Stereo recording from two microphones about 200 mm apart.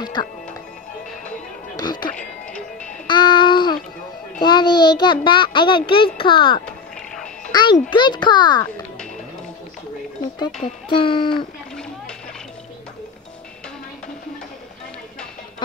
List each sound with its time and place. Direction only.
0.0 s music: 20° left (ahead or behind)
1.8 s music: 20° left (ahead or behind)
3.1 s music: 20° left (ahead or behind)
4.4 s a child's voice: 20° left (ahead or behind)
10.9 s a child's voice: 25° left (ahead or behind)